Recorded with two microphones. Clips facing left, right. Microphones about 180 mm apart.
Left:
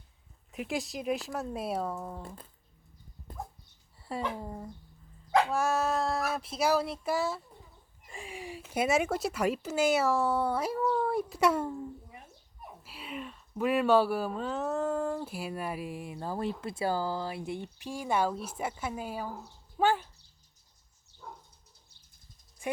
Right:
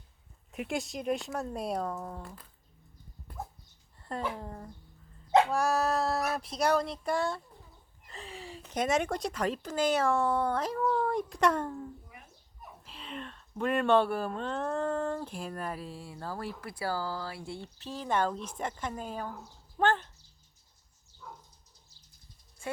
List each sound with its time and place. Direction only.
0.5 s speech: centre (ahead or behind)
2.2 s speech: 25° left (ahead or behind)
4.4 s speech: 10° left (ahead or behind)
12.8 s speech: 10° left (ahead or behind)
21.1 s a sound: 65° left (ahead or behind)
22.6 s a sound: 15° left (ahead or behind)